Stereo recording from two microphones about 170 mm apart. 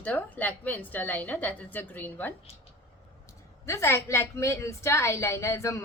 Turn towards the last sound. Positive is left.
turn(degrees=15)  # may be behind; listen again after turning